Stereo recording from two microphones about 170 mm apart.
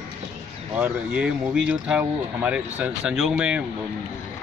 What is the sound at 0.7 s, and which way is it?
Speech, 5° right (ahead or behind).